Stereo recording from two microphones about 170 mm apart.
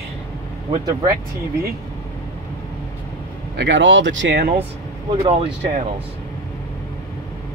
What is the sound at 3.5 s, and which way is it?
Speech, 90° right.